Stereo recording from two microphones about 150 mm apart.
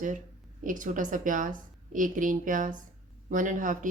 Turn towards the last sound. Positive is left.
turn(degrees=-60)  # may be behind; listen again after turning